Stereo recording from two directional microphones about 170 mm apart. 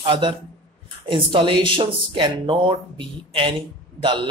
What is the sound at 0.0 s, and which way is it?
A man's voice, 30° right (ahead or behind).